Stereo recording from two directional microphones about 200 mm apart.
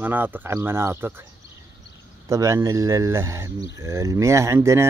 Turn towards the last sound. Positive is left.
turn(degrees=-15)  # may be behind; listen again after turning